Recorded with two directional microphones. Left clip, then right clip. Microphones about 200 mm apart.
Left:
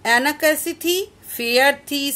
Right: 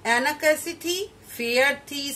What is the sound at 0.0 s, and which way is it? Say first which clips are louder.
A woman's voice: left 5 dB; 55° left (ahead or behind).